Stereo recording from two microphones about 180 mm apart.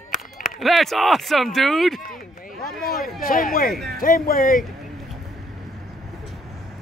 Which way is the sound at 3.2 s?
50° left (ahead or behind).